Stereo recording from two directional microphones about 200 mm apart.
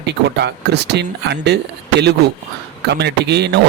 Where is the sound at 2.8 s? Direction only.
55° right (ahead or behind).